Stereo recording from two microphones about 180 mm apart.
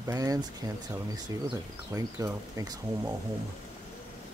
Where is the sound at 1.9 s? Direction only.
20° right (ahead or behind).